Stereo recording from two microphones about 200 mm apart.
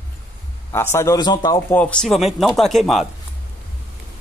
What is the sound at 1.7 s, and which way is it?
Speech, 5° left (ahead or behind).